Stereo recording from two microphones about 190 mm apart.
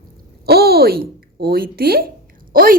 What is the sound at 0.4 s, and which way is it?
A woman's voice, 55° right (ahead or behind).